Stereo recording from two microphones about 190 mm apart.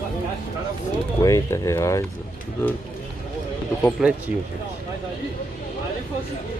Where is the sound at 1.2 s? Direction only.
15° left (ahead or behind).